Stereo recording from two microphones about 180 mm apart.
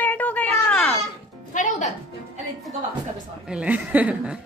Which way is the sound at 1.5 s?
40° left (ahead or behind).